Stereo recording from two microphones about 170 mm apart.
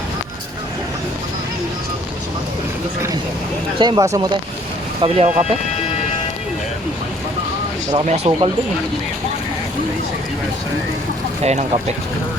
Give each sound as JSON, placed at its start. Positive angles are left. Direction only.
{"t": 3.8, "sound": "speech", "side_deg": -25}
{"t": 5.0, "sound": "speech", "side_deg": -40}
{"t": 7.9, "sound": "speech", "side_deg": -40}
{"t": 11.4, "sound": "speech", "side_deg": -40}